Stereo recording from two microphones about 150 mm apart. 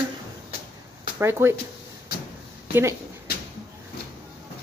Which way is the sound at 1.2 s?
15° right (ahead or behind).